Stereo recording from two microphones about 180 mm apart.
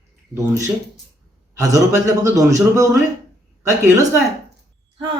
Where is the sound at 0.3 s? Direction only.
15° right (ahead or behind).